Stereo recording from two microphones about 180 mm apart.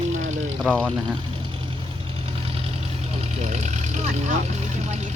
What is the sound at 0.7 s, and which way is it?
Speech, 5° left (ahead or behind).